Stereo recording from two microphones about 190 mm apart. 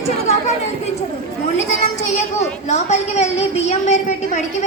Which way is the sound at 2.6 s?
35° left (ahead or behind).